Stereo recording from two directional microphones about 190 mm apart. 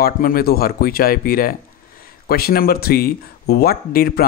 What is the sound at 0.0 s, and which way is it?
Speech, 50° left (ahead or behind).